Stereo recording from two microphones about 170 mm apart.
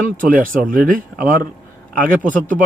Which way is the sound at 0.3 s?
55° right (ahead or behind).